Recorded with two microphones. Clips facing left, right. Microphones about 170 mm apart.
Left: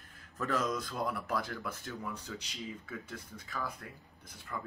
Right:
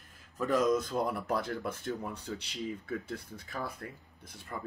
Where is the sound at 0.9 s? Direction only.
30° right (ahead or behind).